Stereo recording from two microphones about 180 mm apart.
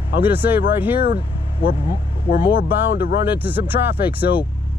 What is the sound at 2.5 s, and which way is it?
Speech, 60° left (ahead or behind).